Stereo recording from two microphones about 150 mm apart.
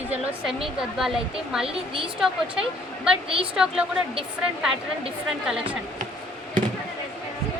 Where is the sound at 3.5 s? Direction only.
5° right (ahead or behind).